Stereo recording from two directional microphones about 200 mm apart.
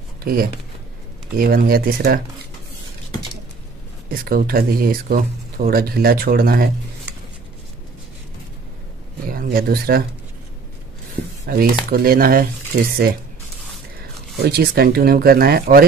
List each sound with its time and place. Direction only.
0.2 s speech: 50° right (ahead or behind)
4.2 s speech: 45° right (ahead or behind)
9.3 s speech: 45° right (ahead or behind)
11.4 s speech: 45° right (ahead or behind)
14.4 s speech: 50° right (ahead or behind)